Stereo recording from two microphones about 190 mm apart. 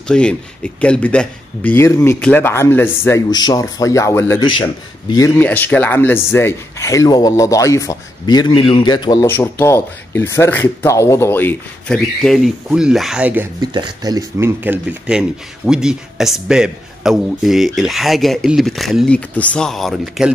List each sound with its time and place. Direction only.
0.1 s speech: 5° left (ahead or behind)
4.4 s a man's voice: 25° left (ahead or behind)
5.1 s speech: 15° left (ahead or behind); by 13.5 s 10° right (ahead or behind)
13.6 s speech: 20° right (ahead or behind); by 20.2 s centre (ahead or behind)